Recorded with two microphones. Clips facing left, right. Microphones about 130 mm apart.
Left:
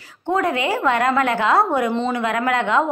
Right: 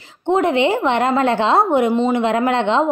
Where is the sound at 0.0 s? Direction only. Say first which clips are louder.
Right 4 dB; 25° right (ahead or behind).